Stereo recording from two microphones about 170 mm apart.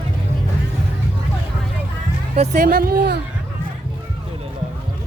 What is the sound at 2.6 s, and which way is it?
Speech, 65° right (ahead or behind).